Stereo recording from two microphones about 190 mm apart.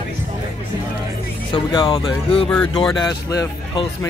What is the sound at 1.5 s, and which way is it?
Speech, 25° left (ahead or behind).